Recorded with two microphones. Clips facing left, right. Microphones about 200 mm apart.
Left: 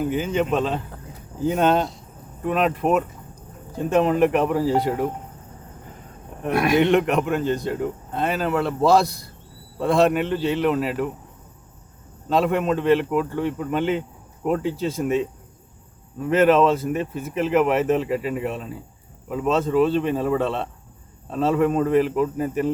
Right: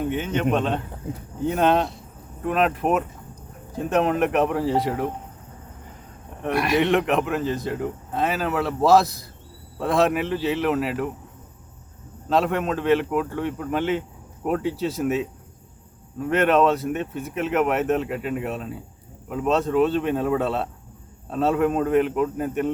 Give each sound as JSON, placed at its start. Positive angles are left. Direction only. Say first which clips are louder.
{"t": 0.0, "sound": "speech", "louder": "left 1 dB", "side_deg": 0}
{"t": 6.5, "sound": "speech", "louder": "left 3 dB", "side_deg": 50}
{"t": 6.7, "sound": "speech", "louder": "left 2 dB", "side_deg": 0}
{"t": 12.3, "sound": "speech", "louder": "left 2 dB", "side_deg": 0}
{"t": 16.3, "sound": "speech", "louder": "left 2 dB", "side_deg": 0}